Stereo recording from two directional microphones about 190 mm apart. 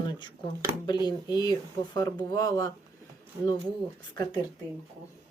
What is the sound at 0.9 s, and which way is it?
Speech, 20° left (ahead or behind).